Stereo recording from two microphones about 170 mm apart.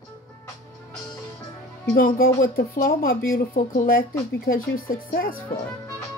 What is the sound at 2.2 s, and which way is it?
Speech, 55° left (ahead or behind).